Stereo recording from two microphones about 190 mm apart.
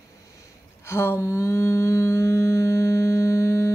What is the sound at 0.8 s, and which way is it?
Humming, 15° left (ahead or behind).